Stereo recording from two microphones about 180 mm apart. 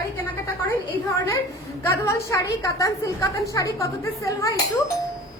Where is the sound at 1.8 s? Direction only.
15° left (ahead or behind).